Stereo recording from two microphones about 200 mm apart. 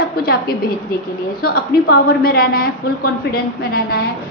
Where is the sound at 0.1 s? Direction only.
50° left (ahead or behind).